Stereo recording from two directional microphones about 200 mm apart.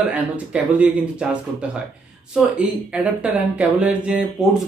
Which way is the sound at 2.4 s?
5° right (ahead or behind).